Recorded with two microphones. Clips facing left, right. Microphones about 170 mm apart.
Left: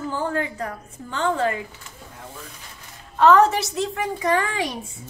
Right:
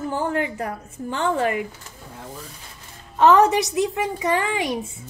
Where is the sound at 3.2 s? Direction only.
20° right (ahead or behind).